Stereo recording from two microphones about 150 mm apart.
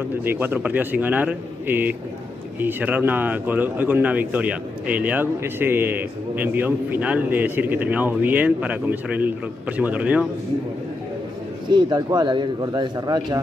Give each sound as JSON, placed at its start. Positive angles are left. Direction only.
{"t": 0.2, "sound": "speech", "side_deg": -15}
{"t": 11.7, "sound": "speech", "side_deg": -30}